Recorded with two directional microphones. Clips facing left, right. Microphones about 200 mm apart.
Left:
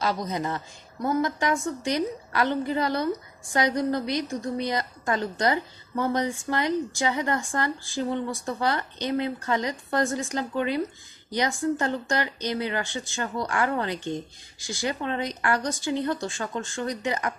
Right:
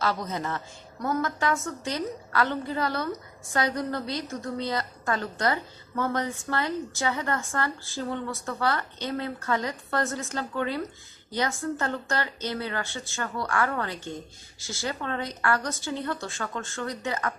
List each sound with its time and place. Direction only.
0.0 s a woman's voice: 15° left (ahead or behind)